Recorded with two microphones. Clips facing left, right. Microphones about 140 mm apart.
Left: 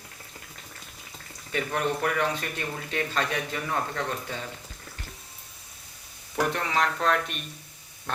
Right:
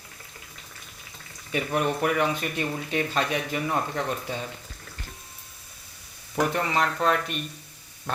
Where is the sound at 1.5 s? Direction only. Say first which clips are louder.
Right 2 dB; 15° right (ahead or behind).